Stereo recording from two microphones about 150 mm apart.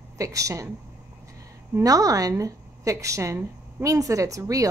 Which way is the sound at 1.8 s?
25° right (ahead or behind).